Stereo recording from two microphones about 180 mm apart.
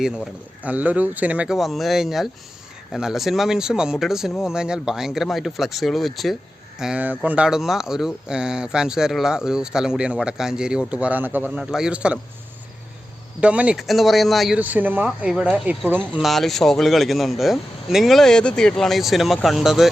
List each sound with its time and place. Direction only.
0.6 s speech: 10° right (ahead or behind)
13.4 s speech: 5° right (ahead or behind)